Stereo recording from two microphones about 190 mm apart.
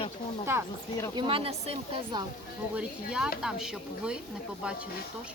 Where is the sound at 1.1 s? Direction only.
25° right (ahead or behind).